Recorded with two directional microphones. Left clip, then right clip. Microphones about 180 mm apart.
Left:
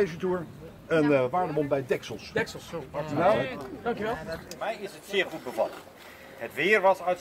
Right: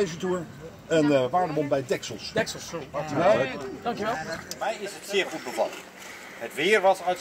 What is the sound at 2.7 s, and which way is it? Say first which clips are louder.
Speech: even; 25° left (ahead or behind).